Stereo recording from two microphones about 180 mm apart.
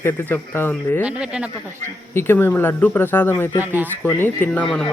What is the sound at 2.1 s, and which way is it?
Speech, 10° left (ahead or behind).